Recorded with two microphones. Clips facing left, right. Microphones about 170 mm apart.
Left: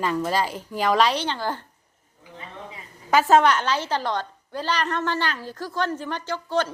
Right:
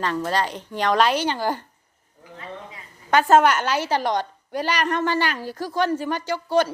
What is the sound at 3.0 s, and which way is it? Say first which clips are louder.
A woman's voice: right 1 dB; centre (ahead or behind).